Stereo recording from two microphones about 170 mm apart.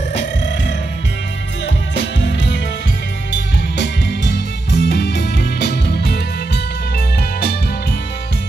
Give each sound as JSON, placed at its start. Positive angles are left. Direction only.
{"t": 0.1, "sound": "music", "side_deg": 90}
{"t": 2.0, "sound": "music", "side_deg": 90}